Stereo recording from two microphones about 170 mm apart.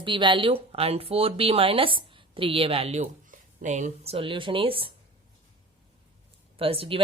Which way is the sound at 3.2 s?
50° right (ahead or behind).